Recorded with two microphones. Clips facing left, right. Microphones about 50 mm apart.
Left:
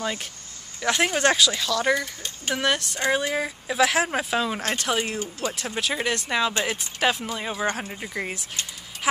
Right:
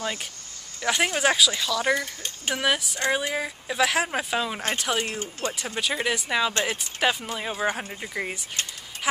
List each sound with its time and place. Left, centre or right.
0.0 s speech: centre
5.4 s speech: right
5.8 s speech: centre